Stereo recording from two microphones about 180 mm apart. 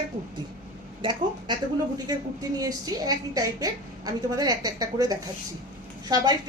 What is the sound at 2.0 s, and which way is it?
Speech, 20° right (ahead or behind).